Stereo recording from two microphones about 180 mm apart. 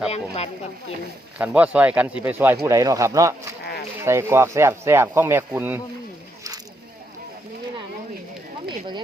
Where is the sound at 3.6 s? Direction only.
60° left (ahead or behind).